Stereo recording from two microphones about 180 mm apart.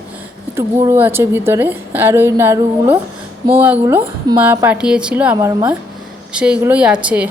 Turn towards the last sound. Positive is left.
turn(degrees=-5)  # may be behind; listen again after turning